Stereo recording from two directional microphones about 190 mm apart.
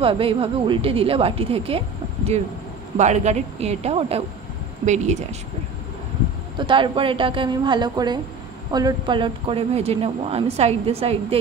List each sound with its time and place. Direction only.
0.0 s a woman's voice: 30° right (ahead or behind)
3.0 s speech: 35° right (ahead or behind)
6.6 s a woman's voice: 25° right (ahead or behind)